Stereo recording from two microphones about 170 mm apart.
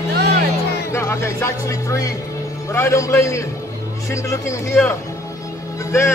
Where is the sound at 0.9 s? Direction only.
15° left (ahead or behind).